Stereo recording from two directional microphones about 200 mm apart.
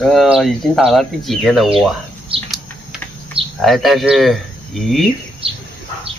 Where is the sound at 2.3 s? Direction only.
25° right (ahead or behind).